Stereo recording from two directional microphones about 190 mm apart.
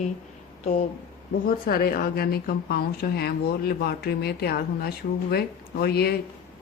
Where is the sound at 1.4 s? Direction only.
50° left (ahead or behind).